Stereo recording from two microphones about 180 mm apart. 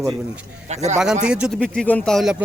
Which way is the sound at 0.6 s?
40° right (ahead or behind).